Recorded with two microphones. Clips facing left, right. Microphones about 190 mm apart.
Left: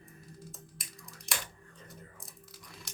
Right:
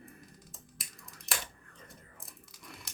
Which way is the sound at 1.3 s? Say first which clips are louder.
Even; centre (ahead or behind).